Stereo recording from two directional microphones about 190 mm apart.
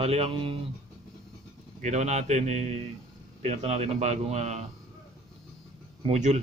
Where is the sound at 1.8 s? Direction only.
35° right (ahead or behind).